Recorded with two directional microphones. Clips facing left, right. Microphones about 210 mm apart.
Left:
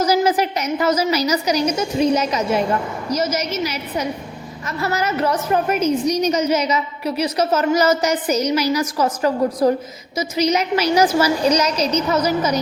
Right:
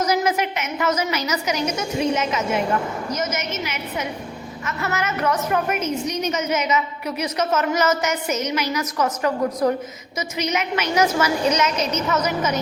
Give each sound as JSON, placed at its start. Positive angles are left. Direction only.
{"t": 0.0, "sound": "a woman's voice", "side_deg": 30}